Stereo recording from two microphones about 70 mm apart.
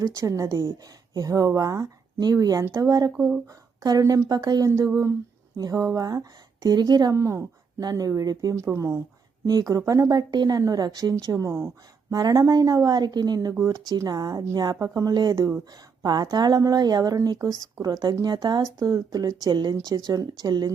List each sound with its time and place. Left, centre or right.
0.0 s speech: right
2.3 s speech: right
2.6 s speech: right
2.9 s speech: right
7.2 s speech: right
7.8 s speech: right
8.5 s speech: right
9.5 s speech: right
11.4 s speech: right
12.1 s speech: right
16.0 s speech: right
19.5 s speech: right
20.1 s speech: right